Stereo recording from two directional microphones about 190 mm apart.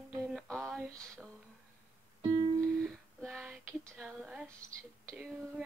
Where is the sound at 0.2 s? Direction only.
Centre (ahead or behind).